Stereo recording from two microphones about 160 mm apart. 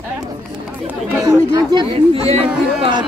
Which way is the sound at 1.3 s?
25° right (ahead or behind).